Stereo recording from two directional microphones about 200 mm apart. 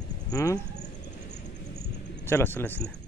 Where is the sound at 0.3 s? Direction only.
15° left (ahead or behind).